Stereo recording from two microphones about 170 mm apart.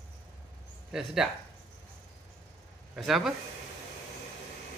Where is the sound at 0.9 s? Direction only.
5° right (ahead or behind).